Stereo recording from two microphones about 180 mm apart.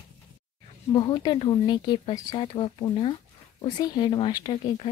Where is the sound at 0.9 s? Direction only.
25° left (ahead or behind).